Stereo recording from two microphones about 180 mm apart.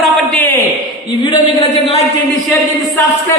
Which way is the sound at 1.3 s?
30° left (ahead or behind).